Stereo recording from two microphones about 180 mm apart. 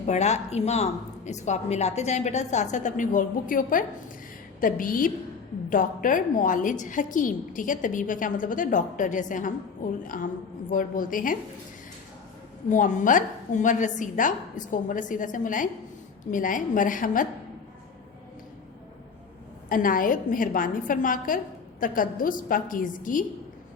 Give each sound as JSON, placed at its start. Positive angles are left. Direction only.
{"t": 0.0, "sound": "a woman's voice", "side_deg": 40}
{"t": 12.7, "sound": "a woman's voice", "side_deg": 45}
{"t": 19.6, "sound": "a woman's voice", "side_deg": 50}